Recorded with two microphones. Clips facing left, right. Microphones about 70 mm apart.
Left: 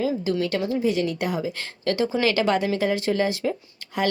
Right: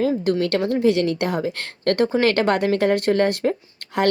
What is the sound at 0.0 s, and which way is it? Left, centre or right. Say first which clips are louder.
A woman's voice: right 4 dB; right.